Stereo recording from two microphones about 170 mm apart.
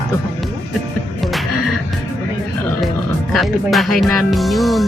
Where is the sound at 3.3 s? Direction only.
Centre (ahead or behind).